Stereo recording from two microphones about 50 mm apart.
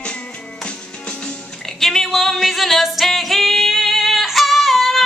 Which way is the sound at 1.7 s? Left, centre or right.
Centre.